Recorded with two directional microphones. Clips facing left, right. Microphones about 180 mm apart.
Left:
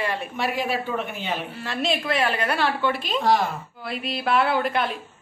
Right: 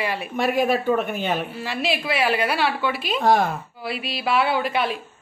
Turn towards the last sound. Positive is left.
turn(degrees=-5)  # may be behind; listen again after turning